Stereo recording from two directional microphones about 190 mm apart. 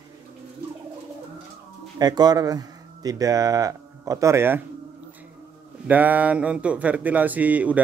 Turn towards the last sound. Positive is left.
turn(degrees=-10)  # may be behind; listen again after turning